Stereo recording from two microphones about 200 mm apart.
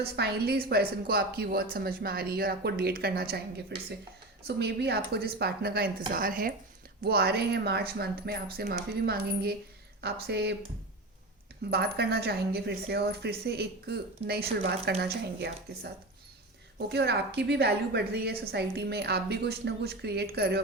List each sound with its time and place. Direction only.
0.0 s a woman's voice: 50° right (ahead or behind)
11.7 s a woman's voice: 50° right (ahead or behind)